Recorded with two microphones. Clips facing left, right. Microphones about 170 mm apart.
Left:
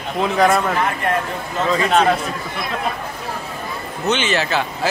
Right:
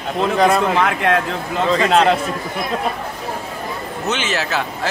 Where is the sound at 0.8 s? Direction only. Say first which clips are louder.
Right 3 dB; 90° right.